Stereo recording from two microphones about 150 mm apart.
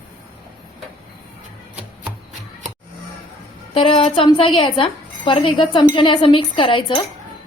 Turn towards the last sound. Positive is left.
turn(degrees=35)  # may be behind; listen again after turning